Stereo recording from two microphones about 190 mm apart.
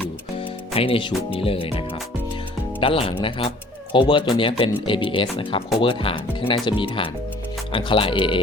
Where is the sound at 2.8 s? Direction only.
30° left (ahead or behind).